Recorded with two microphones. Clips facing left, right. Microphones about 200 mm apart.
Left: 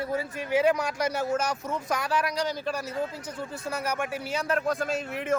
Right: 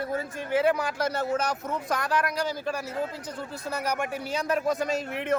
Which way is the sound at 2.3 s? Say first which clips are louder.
Even; 10° right (ahead or behind).